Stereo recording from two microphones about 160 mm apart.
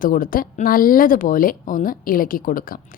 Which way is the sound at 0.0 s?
60° left (ahead or behind).